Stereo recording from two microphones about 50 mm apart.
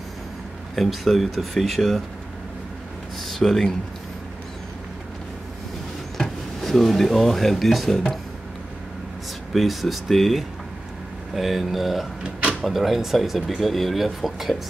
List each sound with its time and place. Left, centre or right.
0.7 s speech: centre
3.2 s speech: centre
6.1 s speech: centre
9.5 s speech: centre
12.2 s drawer open or close: centre
12.6 s speech: centre